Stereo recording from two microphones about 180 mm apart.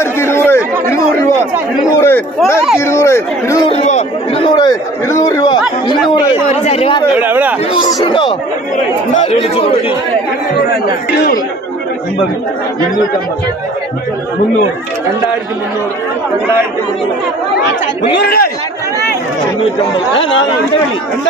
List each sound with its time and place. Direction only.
0.0 s chatter: 15° left (ahead or behind)
2.0 s speech: 15° left (ahead or behind)
3.6 s a sound: 35° left (ahead or behind)
5.0 s chatter: 15° left (ahead or behind)
5.9 s speech: 25° left (ahead or behind)
6.5 s speech: 35° left (ahead or behind)
7.2 s speech: 10° right (ahead or behind)
7.8 s speech: 25° left (ahead or behind)
9.1 s speech: 35° left (ahead or behind)